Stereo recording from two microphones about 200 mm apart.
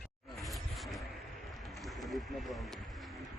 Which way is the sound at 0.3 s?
Centre (ahead or behind).